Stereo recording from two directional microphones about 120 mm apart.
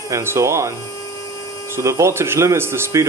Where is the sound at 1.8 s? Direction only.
25° right (ahead or behind).